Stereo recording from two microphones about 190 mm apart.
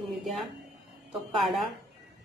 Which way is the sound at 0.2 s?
Centre (ahead or behind).